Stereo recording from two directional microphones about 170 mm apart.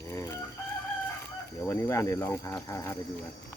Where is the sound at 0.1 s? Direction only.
20° left (ahead or behind).